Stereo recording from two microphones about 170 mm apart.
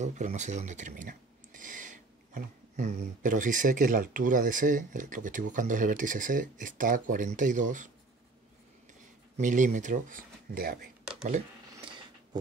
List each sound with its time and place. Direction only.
0.0 s speech: 45° right (ahead or behind)
9.4 s speech: 50° right (ahead or behind)